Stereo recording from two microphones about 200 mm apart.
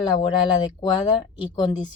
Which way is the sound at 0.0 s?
20° left (ahead or behind).